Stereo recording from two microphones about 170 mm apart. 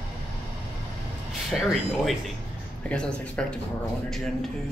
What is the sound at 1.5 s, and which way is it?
Speech, centre (ahead or behind).